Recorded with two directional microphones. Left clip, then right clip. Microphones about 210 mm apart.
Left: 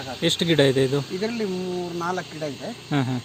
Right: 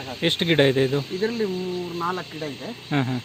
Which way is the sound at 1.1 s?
35° left (ahead or behind).